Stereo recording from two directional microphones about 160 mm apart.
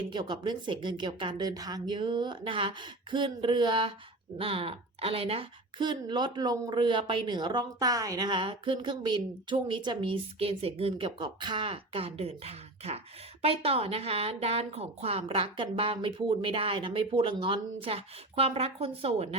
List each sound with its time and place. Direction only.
0.1 s a woman's voice: 30° right (ahead or behind)